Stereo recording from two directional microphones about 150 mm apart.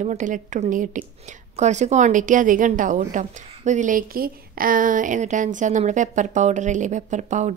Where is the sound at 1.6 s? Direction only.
50° right (ahead or behind).